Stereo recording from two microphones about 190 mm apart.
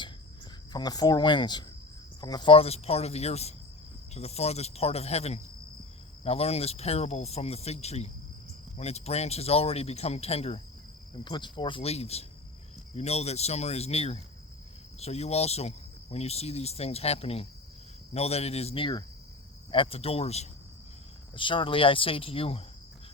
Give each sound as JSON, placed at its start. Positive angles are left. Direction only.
{"t": 0.7, "sound": "speech", "side_deg": 20}